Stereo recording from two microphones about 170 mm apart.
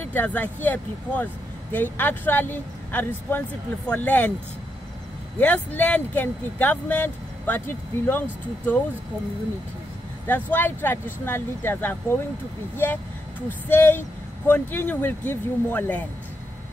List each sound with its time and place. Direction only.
0.0 s speech: 10° left (ahead or behind)
5.4 s speech: 10° left (ahead or behind)
10.2 s speech: 10° left (ahead or behind)